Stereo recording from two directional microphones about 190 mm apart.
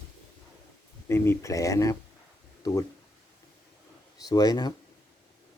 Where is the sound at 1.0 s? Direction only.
15° left (ahead or behind).